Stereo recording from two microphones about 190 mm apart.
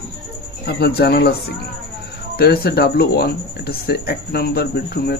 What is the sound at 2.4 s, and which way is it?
Speech, 55° left (ahead or behind).